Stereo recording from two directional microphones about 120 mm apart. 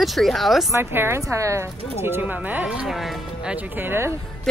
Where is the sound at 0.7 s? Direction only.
20° right (ahead or behind).